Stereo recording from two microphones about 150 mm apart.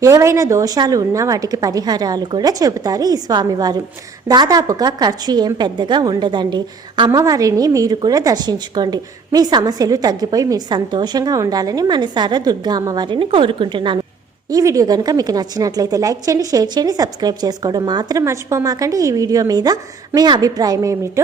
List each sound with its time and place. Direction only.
0.0 s a woman's voice: 20° right (ahead or behind)
14.5 s a woman's voice: 20° right (ahead or behind)